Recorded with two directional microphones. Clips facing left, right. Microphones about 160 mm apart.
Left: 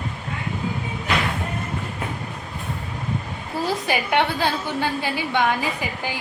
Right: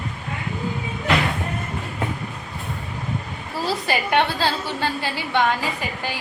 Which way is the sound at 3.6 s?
15° left (ahead or behind).